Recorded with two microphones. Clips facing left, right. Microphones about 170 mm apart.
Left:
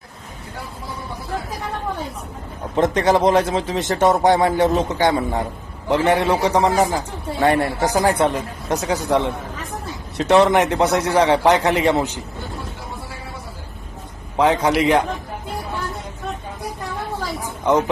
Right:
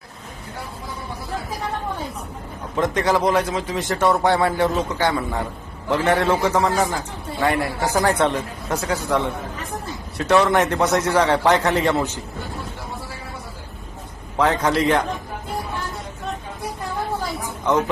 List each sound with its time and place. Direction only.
2.7 s a man's voice: 20° left (ahead or behind)
10.2 s a man's voice: 20° left (ahead or behind)
14.3 s a man's voice: 15° left (ahead or behind)